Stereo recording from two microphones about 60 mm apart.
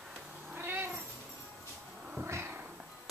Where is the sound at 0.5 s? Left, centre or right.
Right.